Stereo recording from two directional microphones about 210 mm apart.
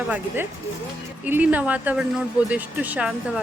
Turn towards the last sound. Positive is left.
turn(degrees=-5)  # may be behind; listen again after turning